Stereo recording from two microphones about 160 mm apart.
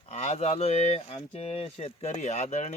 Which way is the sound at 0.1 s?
45° left (ahead or behind).